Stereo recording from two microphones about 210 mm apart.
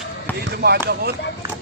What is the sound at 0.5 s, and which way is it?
Speech, 50° right (ahead or behind).